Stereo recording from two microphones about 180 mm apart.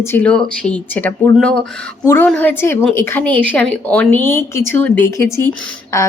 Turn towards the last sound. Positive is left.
turn(degrees=15)  # may be behind; listen again after turning